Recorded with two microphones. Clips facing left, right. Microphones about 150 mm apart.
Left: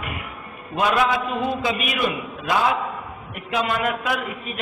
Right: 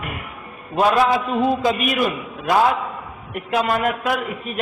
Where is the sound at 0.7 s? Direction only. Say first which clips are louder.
Right 4 dB; 35° right (ahead or behind).